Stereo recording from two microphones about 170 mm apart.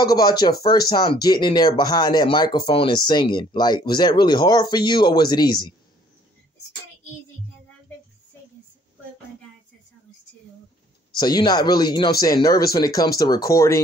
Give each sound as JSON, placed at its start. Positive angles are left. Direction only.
{"t": 0.0, "sound": "speech", "side_deg": 25}
{"t": 11.1, "sound": "speech", "side_deg": 25}